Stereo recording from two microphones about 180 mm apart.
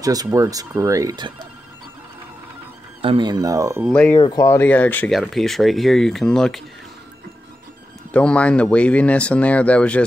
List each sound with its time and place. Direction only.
0.0 s speech: 20° right (ahead or behind)
3.0 s speech: 30° right (ahead or behind)
3.9 s speech: 5° left (ahead or behind)
4.2 s speech: 20° left (ahead or behind); by 6.6 s 5° left (ahead or behind)
8.1 s speech: 5° left (ahead or behind)